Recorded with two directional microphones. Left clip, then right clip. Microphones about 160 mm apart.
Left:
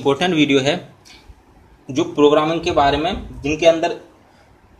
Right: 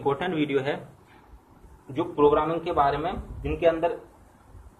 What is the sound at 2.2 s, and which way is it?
A man's voice, 65° left (ahead or behind).